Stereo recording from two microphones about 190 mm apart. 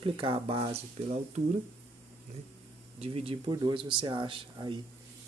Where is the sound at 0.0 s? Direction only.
30° right (ahead or behind).